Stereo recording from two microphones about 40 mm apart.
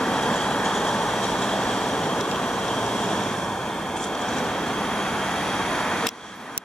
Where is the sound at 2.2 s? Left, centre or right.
Centre.